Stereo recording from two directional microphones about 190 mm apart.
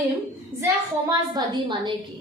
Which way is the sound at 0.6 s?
20° right (ahead or behind).